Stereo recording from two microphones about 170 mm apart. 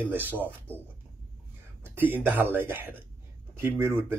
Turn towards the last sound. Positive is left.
turn(degrees=-15)  # may be behind; listen again after turning